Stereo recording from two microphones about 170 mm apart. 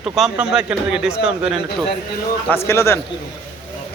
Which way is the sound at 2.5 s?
15° left (ahead or behind).